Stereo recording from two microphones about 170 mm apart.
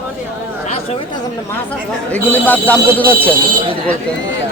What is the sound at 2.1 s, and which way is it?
Speech, 10° left (ahead or behind).